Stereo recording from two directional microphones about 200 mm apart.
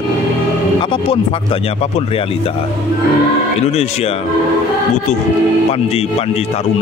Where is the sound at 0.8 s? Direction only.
25° left (ahead or behind).